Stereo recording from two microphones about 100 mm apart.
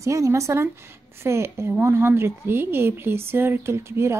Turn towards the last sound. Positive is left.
turn(degrees=-25)  # may be behind; listen again after turning